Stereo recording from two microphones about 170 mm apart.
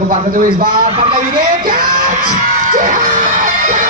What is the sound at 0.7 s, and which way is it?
Speech, 30° right (ahead or behind).